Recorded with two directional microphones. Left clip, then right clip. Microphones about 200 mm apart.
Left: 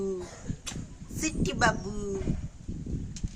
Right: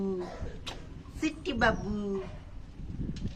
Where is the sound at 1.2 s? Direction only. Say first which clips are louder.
Left 1 dB; 15° left (ahead or behind).